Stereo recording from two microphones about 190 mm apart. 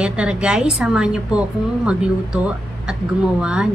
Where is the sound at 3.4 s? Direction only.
5° right (ahead or behind).